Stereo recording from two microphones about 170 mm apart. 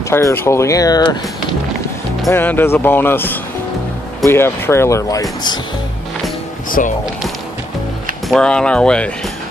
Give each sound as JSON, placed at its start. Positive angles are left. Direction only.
{"t": 0.1, "sound": "speech", "side_deg": 15}
{"t": 2.3, "sound": "speech", "side_deg": 10}
{"t": 6.8, "sound": "speech", "side_deg": 50}
{"t": 8.3, "sound": "speech", "side_deg": 5}